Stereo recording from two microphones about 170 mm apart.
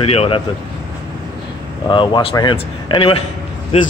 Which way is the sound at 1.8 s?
30° left (ahead or behind).